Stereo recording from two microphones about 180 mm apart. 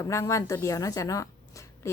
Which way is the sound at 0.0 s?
15° left (ahead or behind).